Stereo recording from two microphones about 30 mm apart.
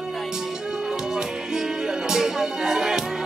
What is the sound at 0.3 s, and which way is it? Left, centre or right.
Music, right.